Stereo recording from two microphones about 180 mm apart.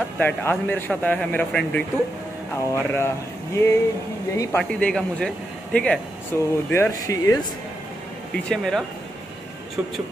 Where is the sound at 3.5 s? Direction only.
15° left (ahead or behind).